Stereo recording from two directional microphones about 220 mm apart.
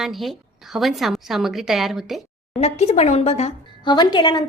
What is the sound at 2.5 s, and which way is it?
Speech, 30° left (ahead or behind).